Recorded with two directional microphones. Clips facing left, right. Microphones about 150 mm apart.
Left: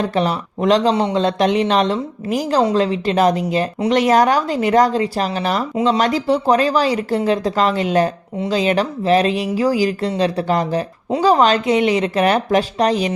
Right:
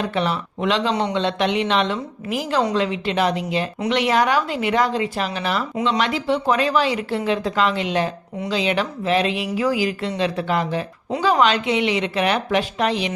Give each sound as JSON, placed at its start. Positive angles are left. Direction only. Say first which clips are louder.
{"t": 0.0, "sound": "speech", "louder": "left 4 dB", "side_deg": 40}